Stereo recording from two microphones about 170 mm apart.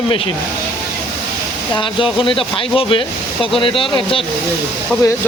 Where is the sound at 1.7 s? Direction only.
30° left (ahead or behind).